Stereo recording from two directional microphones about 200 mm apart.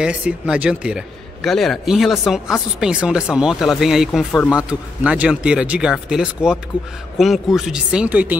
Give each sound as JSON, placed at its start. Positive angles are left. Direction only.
{"t": 0.0, "sound": "a man's voice", "side_deg": -5}